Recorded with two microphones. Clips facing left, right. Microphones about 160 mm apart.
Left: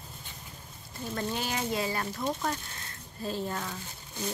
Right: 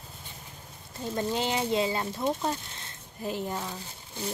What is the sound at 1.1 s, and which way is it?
Speech, 25° right (ahead or behind).